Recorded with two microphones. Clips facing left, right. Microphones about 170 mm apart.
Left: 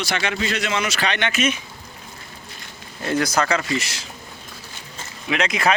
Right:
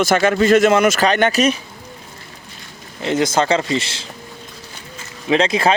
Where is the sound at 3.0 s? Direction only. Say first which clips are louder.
Right 4 dB; 20° right (ahead or behind).